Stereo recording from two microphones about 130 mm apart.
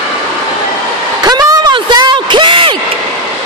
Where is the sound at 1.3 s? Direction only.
30° right (ahead or behind).